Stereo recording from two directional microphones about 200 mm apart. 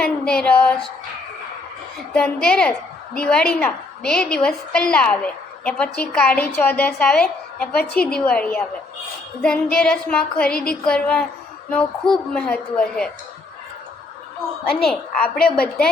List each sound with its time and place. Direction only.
0.0 s a sound: 5° left (ahead or behind)
2.1 s a woman's voice: 5° left (ahead or behind)
9.7 s a woman's voice: 5° left (ahead or behind)
14.7 s a woman's voice: 5° left (ahead or behind)